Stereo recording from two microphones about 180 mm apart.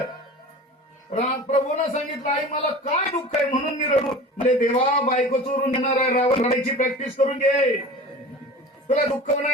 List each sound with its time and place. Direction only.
1.1 s a man's voice: 40° left (ahead or behind)
8.9 s speech: 40° left (ahead or behind)